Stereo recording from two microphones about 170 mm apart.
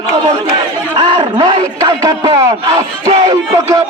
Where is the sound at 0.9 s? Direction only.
35° right (ahead or behind).